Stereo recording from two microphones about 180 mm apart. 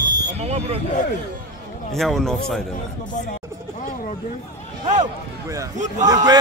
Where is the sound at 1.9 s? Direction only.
Centre (ahead or behind).